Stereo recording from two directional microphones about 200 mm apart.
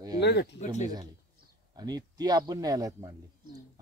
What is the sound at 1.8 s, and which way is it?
Speech, 20° right (ahead or behind).